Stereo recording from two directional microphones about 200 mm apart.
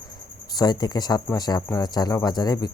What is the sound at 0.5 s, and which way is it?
Speech, 20° left (ahead or behind).